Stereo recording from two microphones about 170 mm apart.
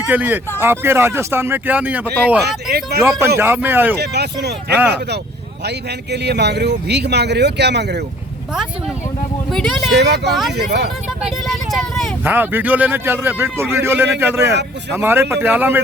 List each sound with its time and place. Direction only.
0.1 s speech: 10° right (ahead or behind)
2.4 s a man's voice: 70° right (ahead or behind)
3.0 s speech: 15° right (ahead or behind)
3.9 s a man's voice: 75° right (ahead or behind)
5.6 s a man's voice: 75° right (ahead or behind)
9.5 s speech: centre (ahead or behind)
9.9 s a man's voice: 80° right
11.2 s speech: centre (ahead or behind)
12.2 s speech: 10° right (ahead or behind)